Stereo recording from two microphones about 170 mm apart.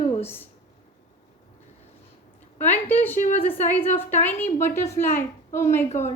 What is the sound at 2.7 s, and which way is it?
A woman's voice, 10° left (ahead or behind).